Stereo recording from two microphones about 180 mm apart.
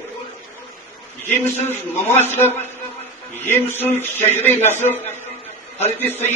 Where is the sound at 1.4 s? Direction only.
10° left (ahead or behind).